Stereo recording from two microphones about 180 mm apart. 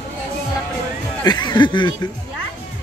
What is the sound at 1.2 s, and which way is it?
Speech, 25° left (ahead or behind).